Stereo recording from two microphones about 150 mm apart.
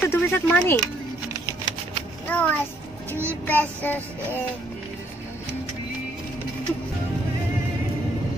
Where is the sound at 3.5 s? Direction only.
10° left (ahead or behind).